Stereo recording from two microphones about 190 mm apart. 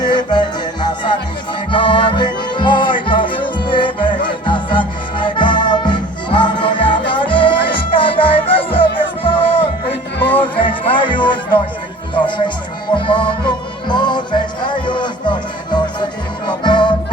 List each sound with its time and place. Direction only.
0.0 s music: 25° left (ahead or behind)